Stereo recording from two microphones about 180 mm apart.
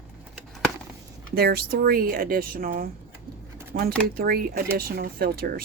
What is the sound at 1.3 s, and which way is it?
Speech, 60° right (ahead or behind).